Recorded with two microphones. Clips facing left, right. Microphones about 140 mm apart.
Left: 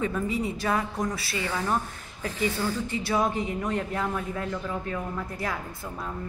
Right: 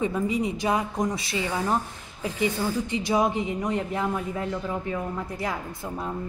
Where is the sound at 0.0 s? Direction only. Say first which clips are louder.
Right 2 dB; 15° right (ahead or behind).